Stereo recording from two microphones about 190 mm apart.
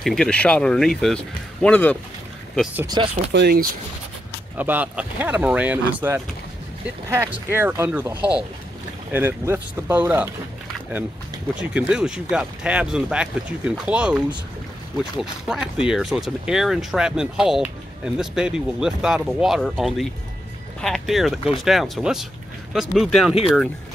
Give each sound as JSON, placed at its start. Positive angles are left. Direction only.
{"t": 0.0, "sound": "speech", "side_deg": 5}
{"t": 3.0, "sound": "speech", "side_deg": -25}
{"t": 3.3, "sound": "speech", "side_deg": -55}
{"t": 4.6, "sound": "speech", "side_deg": -10}
{"t": 11.7, "sound": "speech", "side_deg": -5}